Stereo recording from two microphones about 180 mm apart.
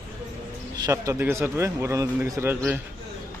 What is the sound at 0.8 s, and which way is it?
A man's voice, 15° right (ahead or behind).